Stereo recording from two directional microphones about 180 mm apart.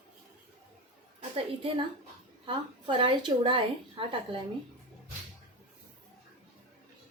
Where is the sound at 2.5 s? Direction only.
25° right (ahead or behind).